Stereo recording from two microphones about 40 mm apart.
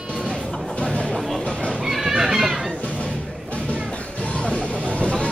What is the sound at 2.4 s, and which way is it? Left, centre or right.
Music, centre.